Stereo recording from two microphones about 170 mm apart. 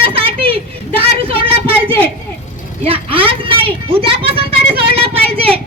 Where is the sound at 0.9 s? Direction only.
35° right (ahead or behind).